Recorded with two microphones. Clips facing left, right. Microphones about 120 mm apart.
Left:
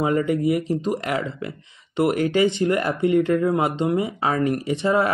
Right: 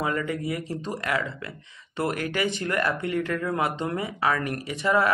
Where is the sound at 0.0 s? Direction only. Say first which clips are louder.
Left 7 dB; 25° left (ahead or behind).